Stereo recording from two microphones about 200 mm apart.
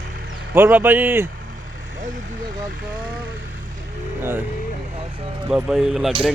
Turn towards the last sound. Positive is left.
turn(degrees=0)  # may be behind; listen again after turning